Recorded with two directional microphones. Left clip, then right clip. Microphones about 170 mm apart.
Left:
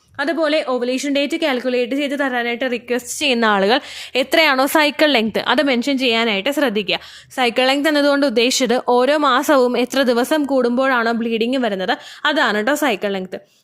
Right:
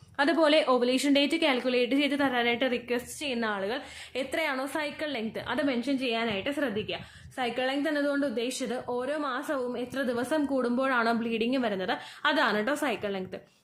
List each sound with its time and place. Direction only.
0.2 s a woman's voice: 25° left (ahead or behind); by 3.0 s 40° left (ahead or behind)
3.2 s a woman's voice: 60° left (ahead or behind)